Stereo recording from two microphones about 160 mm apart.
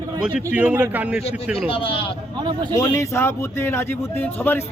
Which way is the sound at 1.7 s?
35° left (ahead or behind).